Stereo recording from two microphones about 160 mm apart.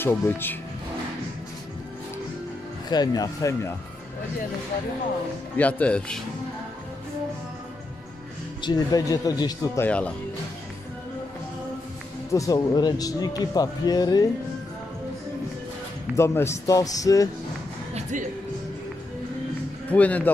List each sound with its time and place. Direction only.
0.0 s speech: 15° left (ahead or behind)
2.9 s speech: 25° left (ahead or behind)
5.6 s speech: 10° left (ahead or behind)
8.5 s speech: 25° left (ahead or behind)
9.8 s speech: 10° left (ahead or behind)
12.3 s speech: 20° left (ahead or behind)
16.2 s speech: 15° left (ahead or behind)
19.9 s speech: 10° left (ahead or behind)